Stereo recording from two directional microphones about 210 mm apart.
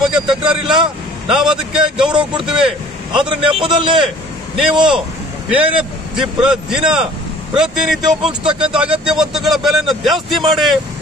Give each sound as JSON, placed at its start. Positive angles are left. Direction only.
{"t": 1.2, "sound": "a man's voice", "side_deg": -5}
{"t": 3.2, "sound": "a man's voice", "side_deg": -25}
{"t": 4.6, "sound": "a man's voice", "side_deg": -5}